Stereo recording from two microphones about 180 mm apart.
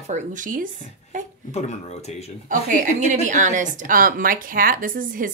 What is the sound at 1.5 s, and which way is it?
Speech, 40° left (ahead or behind).